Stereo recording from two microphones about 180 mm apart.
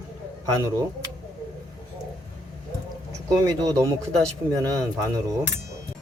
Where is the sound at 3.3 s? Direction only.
20° right (ahead or behind).